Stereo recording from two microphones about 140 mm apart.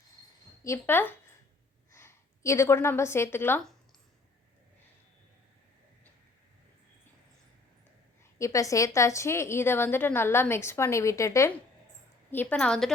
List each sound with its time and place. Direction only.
0.6 s a woman's voice: 15° left (ahead or behind)
8.4 s a woman's voice: 20° left (ahead or behind); by 12.9 s 5° left (ahead or behind)